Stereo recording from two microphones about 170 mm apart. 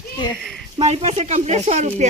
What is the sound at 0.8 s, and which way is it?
Speech, 40° right (ahead or behind).